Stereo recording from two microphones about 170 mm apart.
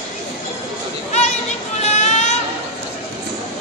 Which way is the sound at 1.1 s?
40° left (ahead or behind).